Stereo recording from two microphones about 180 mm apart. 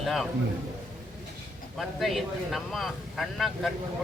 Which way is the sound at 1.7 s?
Centre (ahead or behind).